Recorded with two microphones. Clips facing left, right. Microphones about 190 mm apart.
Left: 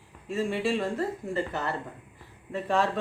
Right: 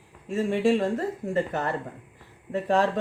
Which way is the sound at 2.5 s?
40° right (ahead or behind).